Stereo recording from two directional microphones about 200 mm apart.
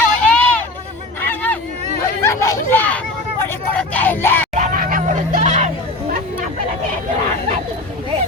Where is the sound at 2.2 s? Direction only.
15° left (ahead or behind).